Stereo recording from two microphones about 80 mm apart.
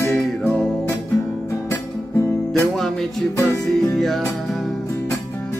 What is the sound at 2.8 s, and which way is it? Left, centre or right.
Music, centre.